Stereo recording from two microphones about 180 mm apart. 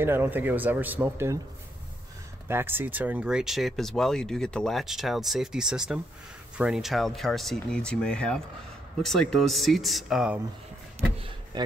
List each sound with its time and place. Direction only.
0.0 s speech: 15° right (ahead or behind)
2.4 s speech: 15° right (ahead or behind)
11.1 s a sound: 30° right (ahead or behind)